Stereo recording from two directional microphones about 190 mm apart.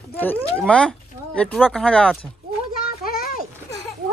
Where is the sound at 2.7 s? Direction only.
50° left (ahead or behind).